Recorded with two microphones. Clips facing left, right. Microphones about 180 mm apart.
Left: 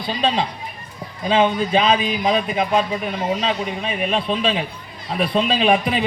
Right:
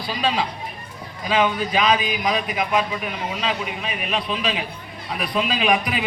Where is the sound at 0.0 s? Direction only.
25° left (ahead or behind).